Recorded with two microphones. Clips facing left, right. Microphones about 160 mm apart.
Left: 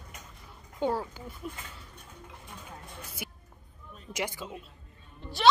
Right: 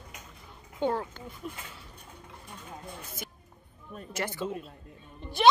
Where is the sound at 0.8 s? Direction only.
5° left (ahead or behind).